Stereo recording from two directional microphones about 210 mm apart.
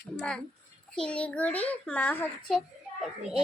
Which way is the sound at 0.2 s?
5° left (ahead or behind).